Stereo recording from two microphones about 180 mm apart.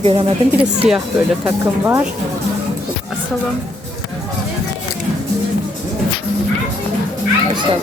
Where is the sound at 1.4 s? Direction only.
10° right (ahead or behind).